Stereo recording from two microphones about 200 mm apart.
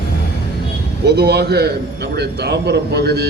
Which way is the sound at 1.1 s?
55° right (ahead or behind).